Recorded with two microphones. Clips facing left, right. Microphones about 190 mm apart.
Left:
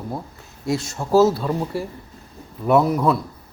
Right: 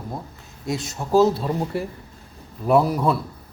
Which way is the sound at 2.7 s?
35° right (ahead or behind).